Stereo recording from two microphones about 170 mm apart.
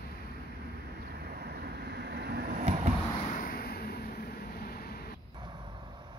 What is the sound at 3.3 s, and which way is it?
Vehicle, 55° left (ahead or behind).